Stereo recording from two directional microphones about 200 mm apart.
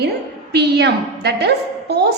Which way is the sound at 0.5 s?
55° right (ahead or behind).